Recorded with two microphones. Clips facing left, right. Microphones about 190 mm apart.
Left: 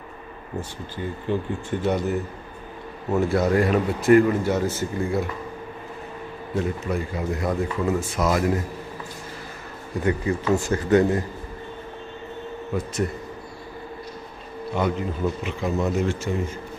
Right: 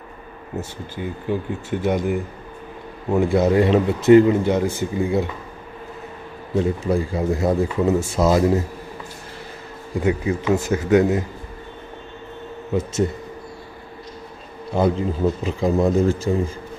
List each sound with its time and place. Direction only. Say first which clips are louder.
0.5 s a man's voice: right 2 dB; 10° right (ahead or behind)
6.5 s a man's voice: right 6 dB; 30° right (ahead or behind)
10.0 s speech: right 2 dB; 10° right (ahead or behind)
14.7 s a man's voice: right 5 dB; 30° right (ahead or behind)